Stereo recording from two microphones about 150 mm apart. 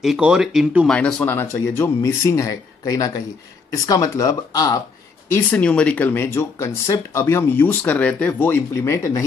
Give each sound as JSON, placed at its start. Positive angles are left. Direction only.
{"t": 0.0, "sound": "speech", "side_deg": -5}
{"t": 0.9, "sound": "speech", "side_deg": 10}
{"t": 5.3, "sound": "speech", "side_deg": 10}